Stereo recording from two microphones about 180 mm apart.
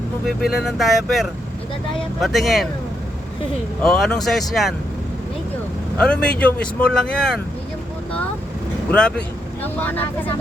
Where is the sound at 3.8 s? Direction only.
5° left (ahead or behind).